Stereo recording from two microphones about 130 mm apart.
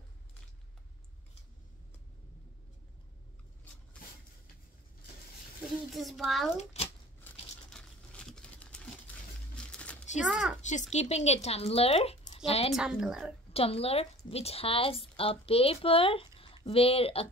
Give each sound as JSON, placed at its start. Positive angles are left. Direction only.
{"t": 5.9, "sound": "a woman's voice", "side_deg": 0}
{"t": 6.5, "sound": "speech", "side_deg": 55}
{"t": 7.7, "sound": "a sound", "side_deg": 5}
{"t": 9.6, "sound": "crumpling", "side_deg": 10}
{"t": 10.2, "sound": "a woman's voice", "side_deg": -5}
{"t": 10.6, "sound": "a woman's voice", "side_deg": 65}
{"t": 12.7, "sound": "a woman's voice", "side_deg": -5}
{"t": 13.5, "sound": "a woman's voice", "side_deg": 50}